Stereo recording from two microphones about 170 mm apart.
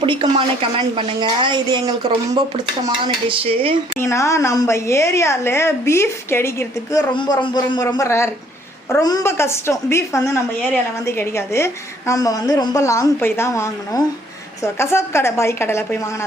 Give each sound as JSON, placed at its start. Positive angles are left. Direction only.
{"t": 0.0, "sound": "a woman's voice", "side_deg": -30}
{"t": 4.0, "sound": "a woman's voice", "side_deg": 15}
{"t": 7.1, "sound": "a man's voice", "side_deg": 25}